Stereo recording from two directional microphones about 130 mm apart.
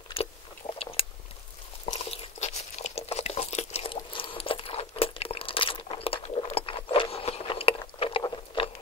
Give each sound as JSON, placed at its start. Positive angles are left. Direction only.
{"t": 0.2, "sound": "chewing", "side_deg": 45}
{"t": 0.6, "sound": "chewing", "side_deg": 60}
{"t": 1.9, "sound": "crunch", "side_deg": 60}